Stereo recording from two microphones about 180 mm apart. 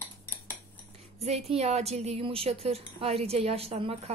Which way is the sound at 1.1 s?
35° right (ahead or behind).